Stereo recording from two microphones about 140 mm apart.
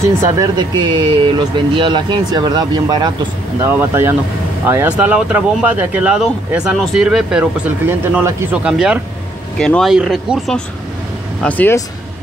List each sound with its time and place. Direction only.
0.4 s speech: 30° right (ahead or behind)
3.6 s speech: 20° right (ahead or behind)
8.6 s speech: 5° right (ahead or behind)
11.4 s speech: 10° left (ahead or behind)